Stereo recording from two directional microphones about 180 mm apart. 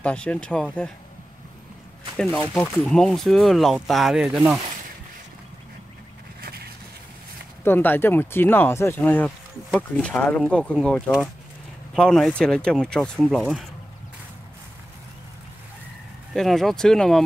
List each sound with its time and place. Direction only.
0.0 s speech: 5° left (ahead or behind)
2.1 s speech: 5° left (ahead or behind)
6.4 s a sound: 60° right (ahead or behind)
7.6 s speech: 10° left (ahead or behind)
16.3 s speech: centre (ahead or behind)